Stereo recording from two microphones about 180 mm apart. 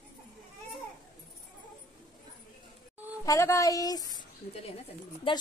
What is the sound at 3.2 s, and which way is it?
Speech, 15° left (ahead or behind).